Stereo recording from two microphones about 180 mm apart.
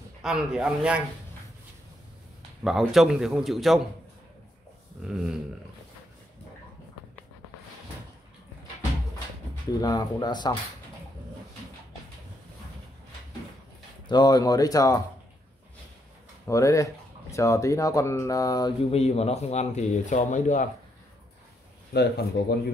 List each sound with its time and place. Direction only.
0.2 s a man's voice: 5° right (ahead or behind)
2.6 s a man's voice: centre (ahead or behind)
5.0 s a man's voice: 5° right (ahead or behind)
9.8 s speech: 20° left (ahead or behind)
14.0 s speech: 25° left (ahead or behind)
16.4 s speech: 15° left (ahead or behind); by 20.6 s 45° left (ahead or behind)
21.9 s speech: 60° left (ahead or behind)